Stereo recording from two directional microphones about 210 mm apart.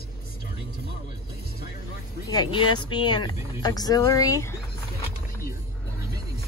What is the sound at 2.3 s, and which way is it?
Speech, 20° left (ahead or behind).